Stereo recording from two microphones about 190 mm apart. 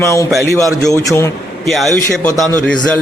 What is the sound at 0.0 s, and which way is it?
Speech, 15° left (ahead or behind).